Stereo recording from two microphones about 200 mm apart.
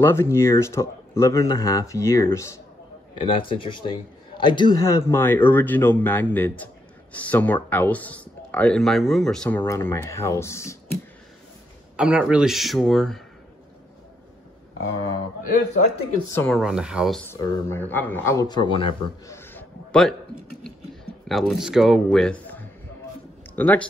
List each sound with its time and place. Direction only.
0.0 s speech: 10° left (ahead or behind)
3.2 s speech: 25° left (ahead or behind)
12.0 s speech: 5° right (ahead or behind)
15.4 s a man's voice: 45° left (ahead or behind)
16.3 s speech: centre (ahead or behind)
17.3 s speech: 10° left (ahead or behind)
19.2 s a sound: 10° left (ahead or behind)
23.5 s speech: 10° left (ahead or behind)